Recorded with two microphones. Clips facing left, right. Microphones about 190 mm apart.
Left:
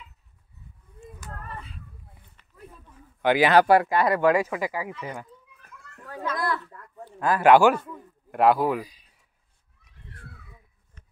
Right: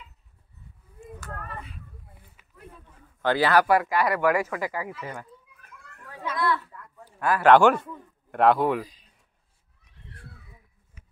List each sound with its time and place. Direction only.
1.2 s a sound: 20° left (ahead or behind)
2.4 s a sound: 5° right (ahead or behind)
3.2 s speech: 15° left (ahead or behind)
6.0 s children playing: 45° left (ahead or behind)
7.2 s speech: 20° left (ahead or behind)
7.5 s a man's voice: 5° left (ahead or behind)